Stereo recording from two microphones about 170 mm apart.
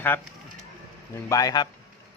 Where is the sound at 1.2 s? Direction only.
20° left (ahead or behind).